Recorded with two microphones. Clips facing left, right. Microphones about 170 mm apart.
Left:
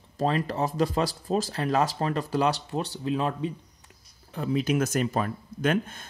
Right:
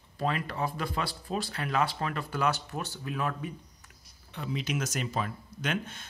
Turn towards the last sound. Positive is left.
turn(degrees=50)  # may be behind; listen again after turning